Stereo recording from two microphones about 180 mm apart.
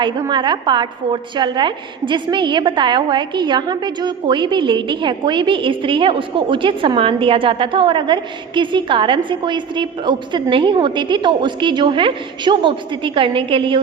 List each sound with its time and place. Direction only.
0.0 s a woman's voice: 25° right (ahead or behind)